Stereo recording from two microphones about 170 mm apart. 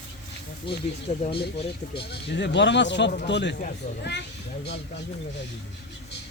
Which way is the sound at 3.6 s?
55° left (ahead or behind).